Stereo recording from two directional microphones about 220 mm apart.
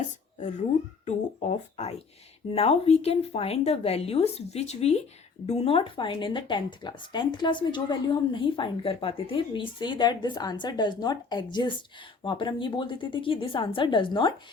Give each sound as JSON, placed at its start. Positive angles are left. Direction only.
{"t": 0.3, "sound": "speech", "side_deg": 35}